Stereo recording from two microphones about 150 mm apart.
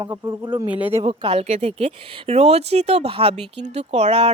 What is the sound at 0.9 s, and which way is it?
A woman's voice, 35° right (ahead or behind).